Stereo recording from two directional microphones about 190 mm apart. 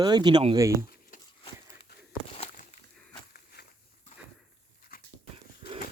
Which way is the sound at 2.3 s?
35° left (ahead or behind).